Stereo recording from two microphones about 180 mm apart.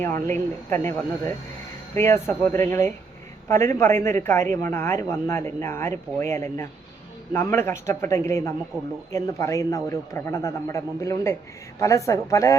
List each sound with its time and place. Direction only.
0.0 s a man's voice: 15° left (ahead or behind)